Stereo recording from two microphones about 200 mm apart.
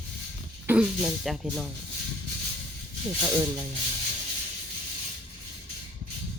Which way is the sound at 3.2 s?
20° right (ahead or behind).